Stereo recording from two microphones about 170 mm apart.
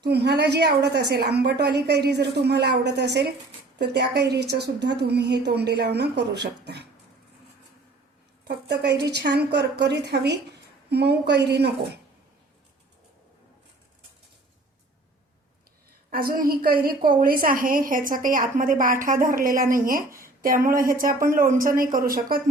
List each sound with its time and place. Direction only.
0.0 s a woman's voice: 75° right (ahead or behind)
8.4 s a woman's voice: 80° right
16.0 s a woman's voice: 60° right (ahead or behind)
20.1 s a sound: 55° right (ahead or behind)
20.7 s a woman's voice: 55° right (ahead or behind)